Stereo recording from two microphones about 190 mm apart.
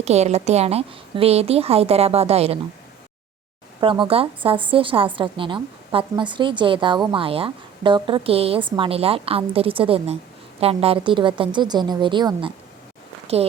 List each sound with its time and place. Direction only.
0.0 s a woman's voice: 35° right (ahead or behind)
3.8 s a woman's voice: 25° right (ahead or behind)